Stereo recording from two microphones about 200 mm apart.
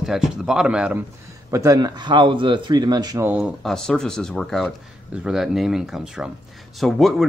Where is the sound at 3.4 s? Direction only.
Centre (ahead or behind).